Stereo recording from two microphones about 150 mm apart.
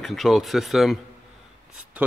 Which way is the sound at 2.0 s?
10° right (ahead or behind).